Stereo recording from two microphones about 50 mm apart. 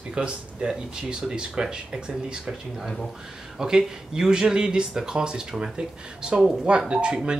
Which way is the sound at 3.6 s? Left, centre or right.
Centre.